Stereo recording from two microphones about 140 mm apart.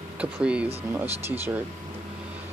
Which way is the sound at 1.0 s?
50° right (ahead or behind).